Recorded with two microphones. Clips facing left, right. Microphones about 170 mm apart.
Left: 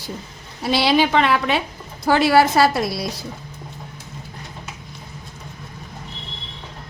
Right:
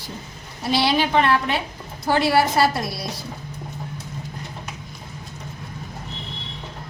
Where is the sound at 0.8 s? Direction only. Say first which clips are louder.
Left 3 dB; 90° left.